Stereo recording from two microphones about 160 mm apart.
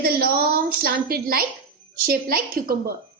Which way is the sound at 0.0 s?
70° right (ahead or behind).